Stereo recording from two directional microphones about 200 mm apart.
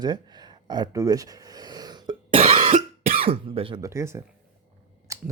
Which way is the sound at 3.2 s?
30° right (ahead or behind).